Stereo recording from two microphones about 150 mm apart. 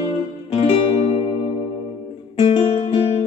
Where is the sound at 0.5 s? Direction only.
40° left (ahead or behind).